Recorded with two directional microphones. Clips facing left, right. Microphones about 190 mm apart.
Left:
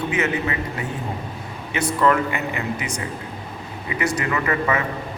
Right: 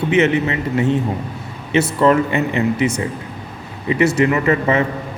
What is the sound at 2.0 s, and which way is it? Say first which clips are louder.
A man's voice: right 4 dB; 25° right (ahead or behind).